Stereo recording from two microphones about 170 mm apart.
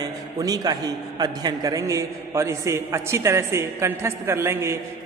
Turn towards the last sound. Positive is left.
turn(degrees=-15)  # may be behind; listen again after turning